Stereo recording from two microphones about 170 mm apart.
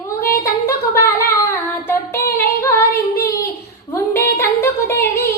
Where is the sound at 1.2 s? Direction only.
15° left (ahead or behind).